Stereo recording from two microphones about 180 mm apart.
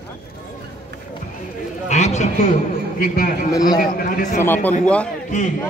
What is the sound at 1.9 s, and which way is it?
Speech, 40° left (ahead or behind).